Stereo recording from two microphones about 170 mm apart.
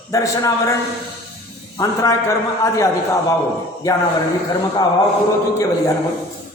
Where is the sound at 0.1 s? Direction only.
20° left (ahead or behind).